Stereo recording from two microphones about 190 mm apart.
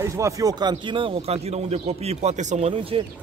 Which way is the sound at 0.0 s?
15° right (ahead or behind).